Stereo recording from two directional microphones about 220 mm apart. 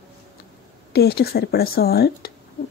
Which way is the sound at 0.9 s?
45° left (ahead or behind).